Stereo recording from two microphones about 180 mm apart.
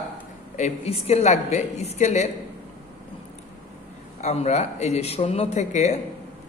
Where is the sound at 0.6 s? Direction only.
35° left (ahead or behind).